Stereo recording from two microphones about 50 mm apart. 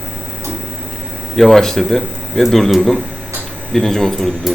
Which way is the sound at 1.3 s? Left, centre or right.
Centre.